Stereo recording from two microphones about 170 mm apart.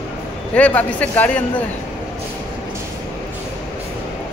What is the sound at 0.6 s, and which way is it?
Speech, 10° left (ahead or behind).